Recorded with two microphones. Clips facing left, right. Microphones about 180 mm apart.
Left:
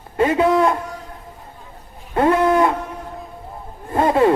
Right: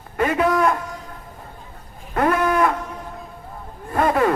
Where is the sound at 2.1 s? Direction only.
25° left (ahead or behind).